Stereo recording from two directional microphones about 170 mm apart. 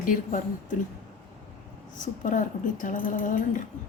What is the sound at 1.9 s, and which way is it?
Speech, 50° left (ahead or behind).